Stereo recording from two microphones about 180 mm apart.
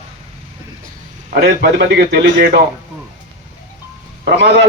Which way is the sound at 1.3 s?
60° right (ahead or behind).